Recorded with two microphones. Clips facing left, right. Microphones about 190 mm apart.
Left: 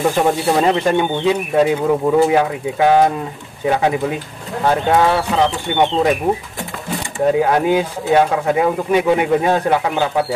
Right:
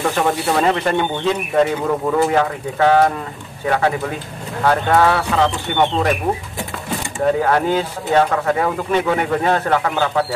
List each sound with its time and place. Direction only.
0.0 s speech: 15° left (ahead or behind)
7.3 s speech: 10° left (ahead or behind)